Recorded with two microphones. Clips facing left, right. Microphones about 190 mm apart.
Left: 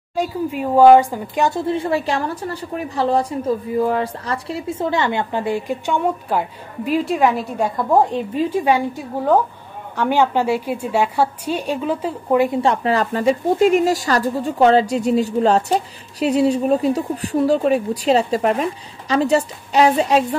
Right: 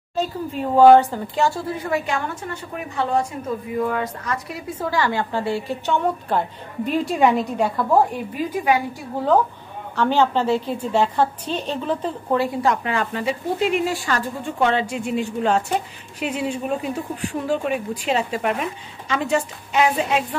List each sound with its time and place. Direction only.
0.1 s speech: 10° left (ahead or behind)
8.4 s speech: 30° left (ahead or behind)
9.9 s a woman's voice: 10° left (ahead or behind)
12.6 s a woman's voice: 35° left (ahead or behind)